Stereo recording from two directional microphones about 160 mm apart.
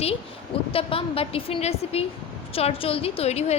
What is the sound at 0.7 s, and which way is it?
A woman's voice, 35° left (ahead or behind).